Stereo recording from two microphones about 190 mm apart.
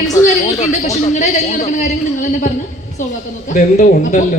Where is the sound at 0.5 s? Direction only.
35° left (ahead or behind).